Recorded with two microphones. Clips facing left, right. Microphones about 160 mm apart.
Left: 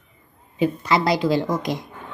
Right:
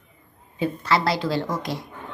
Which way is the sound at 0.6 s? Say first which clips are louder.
Left 3 dB; 15° left (ahead or behind).